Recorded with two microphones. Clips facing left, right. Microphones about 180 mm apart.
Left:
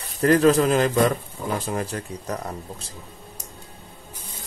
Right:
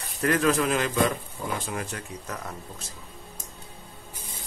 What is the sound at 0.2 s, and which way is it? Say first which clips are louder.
Speech: left 7 dB; 35° left (ahead or behind).